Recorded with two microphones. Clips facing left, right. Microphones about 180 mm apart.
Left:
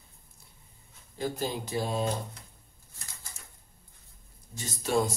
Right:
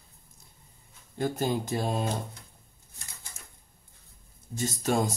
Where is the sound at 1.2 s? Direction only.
50° right (ahead or behind).